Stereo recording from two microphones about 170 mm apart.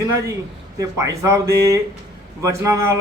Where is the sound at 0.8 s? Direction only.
20° right (ahead or behind).